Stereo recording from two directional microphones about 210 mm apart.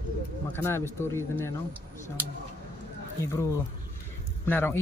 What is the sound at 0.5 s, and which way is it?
Speech, 10° left (ahead or behind).